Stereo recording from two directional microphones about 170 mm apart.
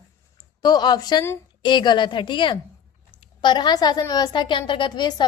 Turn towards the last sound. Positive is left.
turn(degrees=25)  # may be behind; listen again after turning